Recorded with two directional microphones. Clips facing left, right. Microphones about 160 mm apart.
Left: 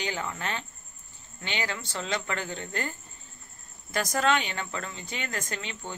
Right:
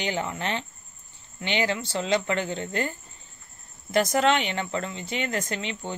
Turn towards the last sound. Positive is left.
turn(degrees=-20)  # may be behind; listen again after turning